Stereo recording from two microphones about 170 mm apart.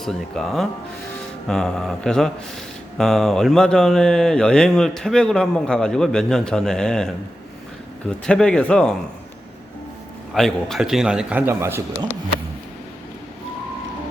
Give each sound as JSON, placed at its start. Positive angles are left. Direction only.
{"t": 0.0, "sound": "speech", "side_deg": 0}
{"t": 8.3, "sound": "speech", "side_deg": 5}
{"t": 10.3, "sound": "speech", "side_deg": 0}